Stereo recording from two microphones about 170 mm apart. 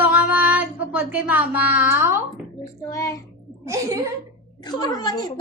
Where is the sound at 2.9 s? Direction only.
20° left (ahead or behind).